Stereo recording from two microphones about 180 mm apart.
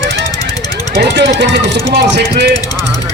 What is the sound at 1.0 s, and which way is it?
Speech, 65° right (ahead or behind).